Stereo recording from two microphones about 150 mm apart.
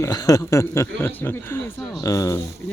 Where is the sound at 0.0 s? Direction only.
25° left (ahead or behind).